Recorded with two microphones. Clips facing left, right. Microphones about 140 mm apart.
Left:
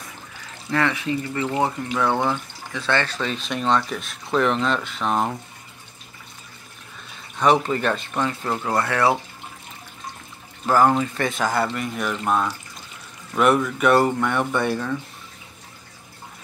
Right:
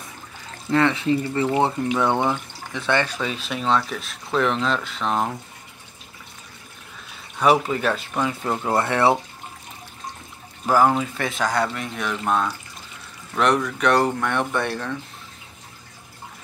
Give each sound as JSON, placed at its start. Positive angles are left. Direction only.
{"t": 0.7, "sound": "speech", "side_deg": -25}
{"t": 7.3, "sound": "speech", "side_deg": -5}
{"t": 10.7, "sound": "speech", "side_deg": -5}